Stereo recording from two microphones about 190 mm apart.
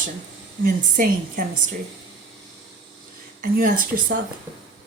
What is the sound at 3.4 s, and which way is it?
Speech, 45° right (ahead or behind).